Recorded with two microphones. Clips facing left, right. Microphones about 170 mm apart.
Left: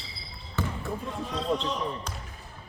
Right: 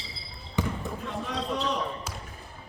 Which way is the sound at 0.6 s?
15° right (ahead or behind).